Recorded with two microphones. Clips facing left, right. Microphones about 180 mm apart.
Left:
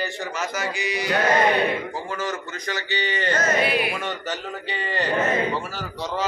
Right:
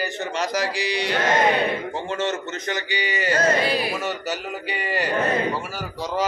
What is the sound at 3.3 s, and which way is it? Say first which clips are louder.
Speech: right 2 dB; 35° right (ahead or behind).